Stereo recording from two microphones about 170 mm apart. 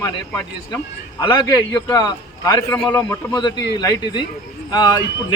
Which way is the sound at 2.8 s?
10° left (ahead or behind).